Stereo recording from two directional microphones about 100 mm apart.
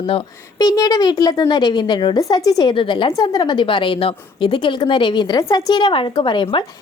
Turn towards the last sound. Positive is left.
turn(degrees=55)  # may be behind; listen again after turning